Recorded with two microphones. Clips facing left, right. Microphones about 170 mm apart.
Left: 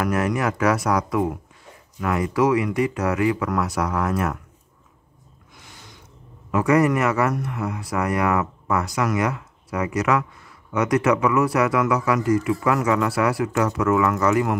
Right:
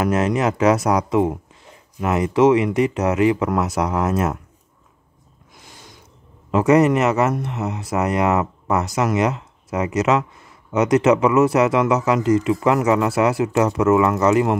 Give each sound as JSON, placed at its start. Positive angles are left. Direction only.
{"t": 0.0, "sound": "speech", "side_deg": -20}
{"t": 6.5, "sound": "speech", "side_deg": -20}